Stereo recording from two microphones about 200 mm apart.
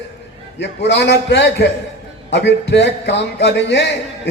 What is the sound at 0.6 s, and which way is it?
Speech, 60° left (ahead or behind).